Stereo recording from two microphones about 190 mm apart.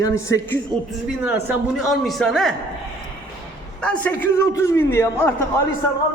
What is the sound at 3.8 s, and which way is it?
A man's voice, 5° left (ahead or behind).